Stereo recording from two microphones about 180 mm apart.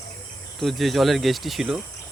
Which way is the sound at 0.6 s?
Centre (ahead or behind).